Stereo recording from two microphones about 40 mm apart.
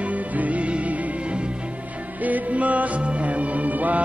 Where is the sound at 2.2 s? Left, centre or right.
Right.